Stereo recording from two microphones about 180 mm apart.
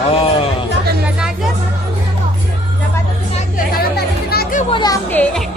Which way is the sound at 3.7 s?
60° left (ahead or behind).